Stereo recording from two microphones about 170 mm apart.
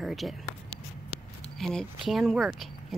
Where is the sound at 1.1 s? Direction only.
35° right (ahead or behind).